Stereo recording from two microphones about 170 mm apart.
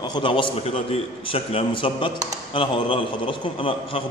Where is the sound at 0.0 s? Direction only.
25° left (ahead or behind).